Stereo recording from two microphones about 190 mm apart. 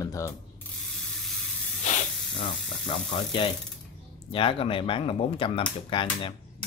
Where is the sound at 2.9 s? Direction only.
25° left (ahead or behind).